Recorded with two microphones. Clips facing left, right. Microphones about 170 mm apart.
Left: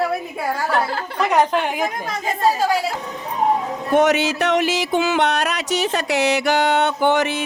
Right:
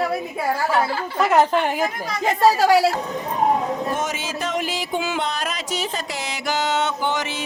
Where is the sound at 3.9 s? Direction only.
70° left (ahead or behind).